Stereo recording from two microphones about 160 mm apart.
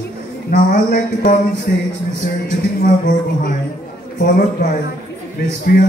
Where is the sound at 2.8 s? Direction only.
55° left (ahead or behind).